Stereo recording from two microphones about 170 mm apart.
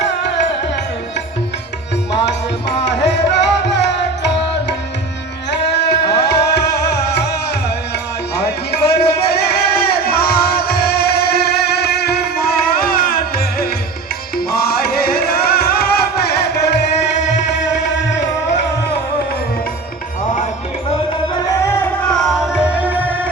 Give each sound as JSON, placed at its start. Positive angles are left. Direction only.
{"t": 2.2, "sound": "music", "side_deg": 90}
{"t": 6.1, "sound": "music", "side_deg": 75}
{"t": 8.4, "sound": "music", "side_deg": 70}
{"t": 21.4, "sound": "music", "side_deg": 15}